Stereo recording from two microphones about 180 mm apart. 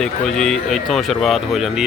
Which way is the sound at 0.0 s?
5° left (ahead or behind).